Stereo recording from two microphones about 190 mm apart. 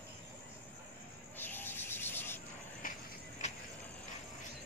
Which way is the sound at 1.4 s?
10° left (ahead or behind).